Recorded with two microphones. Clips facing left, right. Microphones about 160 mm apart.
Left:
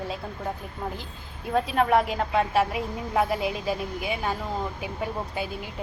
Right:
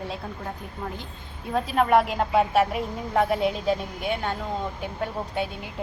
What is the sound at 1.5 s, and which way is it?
Speech, centre (ahead or behind).